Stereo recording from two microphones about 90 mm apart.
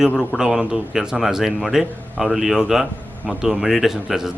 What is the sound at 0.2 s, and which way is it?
A man's voice, 5° right (ahead or behind).